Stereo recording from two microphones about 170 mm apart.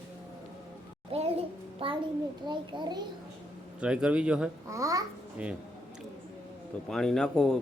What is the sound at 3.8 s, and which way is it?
Speech, 5° right (ahead or behind).